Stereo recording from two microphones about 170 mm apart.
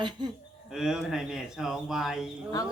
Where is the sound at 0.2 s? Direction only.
25° right (ahead or behind).